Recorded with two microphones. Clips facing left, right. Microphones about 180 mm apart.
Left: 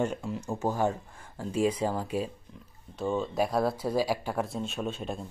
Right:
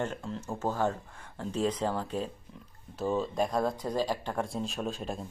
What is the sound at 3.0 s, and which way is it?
Speech, centre (ahead or behind).